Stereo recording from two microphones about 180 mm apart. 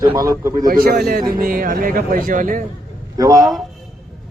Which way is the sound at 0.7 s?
55° right (ahead or behind).